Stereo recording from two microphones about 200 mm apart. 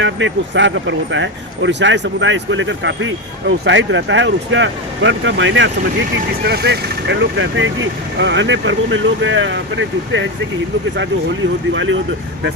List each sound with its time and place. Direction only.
0.0 s speech: 65° right (ahead or behind)
6.4 s speech: 55° right (ahead or behind)
11.7 s speech: 70° right (ahead or behind)